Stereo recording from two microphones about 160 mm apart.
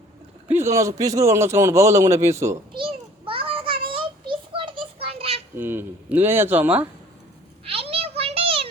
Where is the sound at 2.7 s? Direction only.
35° right (ahead or behind).